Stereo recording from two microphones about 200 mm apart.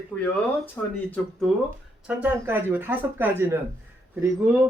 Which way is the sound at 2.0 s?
10° right (ahead or behind).